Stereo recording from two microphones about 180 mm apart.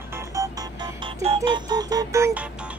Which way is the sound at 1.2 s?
30° right (ahead or behind).